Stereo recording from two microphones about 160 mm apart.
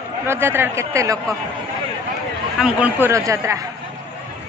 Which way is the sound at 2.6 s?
10° right (ahead or behind).